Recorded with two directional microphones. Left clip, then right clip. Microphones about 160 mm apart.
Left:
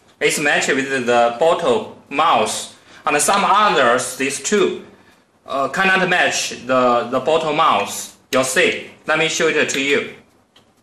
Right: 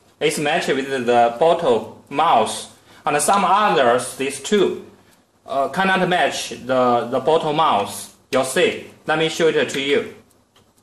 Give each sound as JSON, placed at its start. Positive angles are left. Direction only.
{"t": 0.2, "sound": "speech", "side_deg": -35}